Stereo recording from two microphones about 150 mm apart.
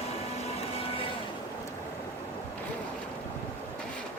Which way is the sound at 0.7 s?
40° left (ahead or behind).